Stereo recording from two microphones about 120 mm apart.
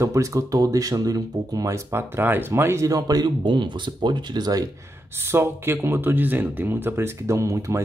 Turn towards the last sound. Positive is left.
turn(degrees=-25)  # may be behind; listen again after turning